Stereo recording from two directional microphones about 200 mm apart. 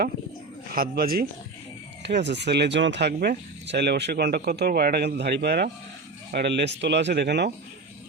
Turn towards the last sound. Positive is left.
turn(degrees=-60)  # may be behind; listen again after turning